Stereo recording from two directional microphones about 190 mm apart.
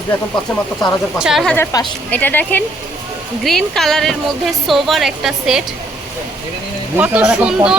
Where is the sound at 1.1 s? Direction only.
Centre (ahead or behind).